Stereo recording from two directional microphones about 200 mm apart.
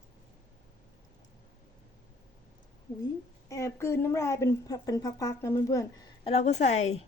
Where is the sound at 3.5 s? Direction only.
15° left (ahead or behind); by 7.0 s 35° left (ahead or behind).